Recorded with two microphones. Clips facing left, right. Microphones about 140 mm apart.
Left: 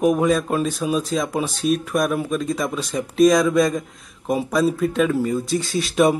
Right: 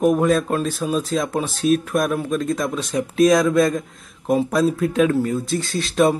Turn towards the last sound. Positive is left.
turn(degrees=0)  # may be behind; listen again after turning